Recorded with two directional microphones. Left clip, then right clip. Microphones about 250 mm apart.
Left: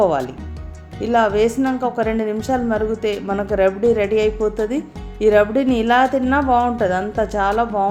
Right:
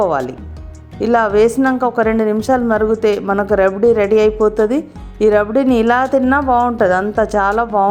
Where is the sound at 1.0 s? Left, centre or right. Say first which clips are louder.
Right 4 dB; right.